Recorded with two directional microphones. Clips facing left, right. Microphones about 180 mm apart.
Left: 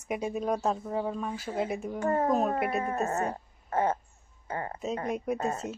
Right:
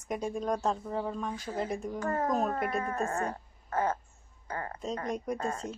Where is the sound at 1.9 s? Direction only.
25° left (ahead or behind).